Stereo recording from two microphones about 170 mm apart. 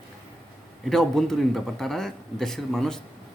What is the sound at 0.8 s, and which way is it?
Speech, centre (ahead or behind).